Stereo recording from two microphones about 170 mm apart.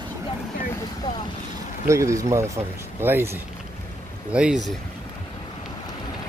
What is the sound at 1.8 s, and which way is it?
Speech, 15° right (ahead or behind).